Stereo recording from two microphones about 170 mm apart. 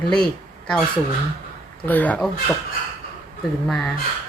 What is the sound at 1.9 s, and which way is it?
Speech, 10° left (ahead or behind).